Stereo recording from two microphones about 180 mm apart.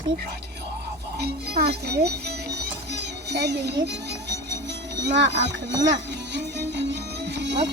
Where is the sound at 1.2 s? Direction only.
60° right (ahead or behind).